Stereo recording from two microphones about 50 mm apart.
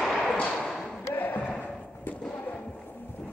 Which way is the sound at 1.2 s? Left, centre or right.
Left.